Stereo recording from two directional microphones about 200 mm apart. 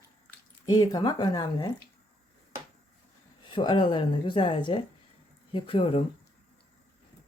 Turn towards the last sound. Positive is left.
turn(degrees=25)  # may be behind; listen again after turning